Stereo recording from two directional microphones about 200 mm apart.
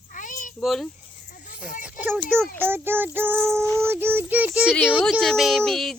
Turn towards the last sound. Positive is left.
turn(degrees=0)  # may be behind; listen again after turning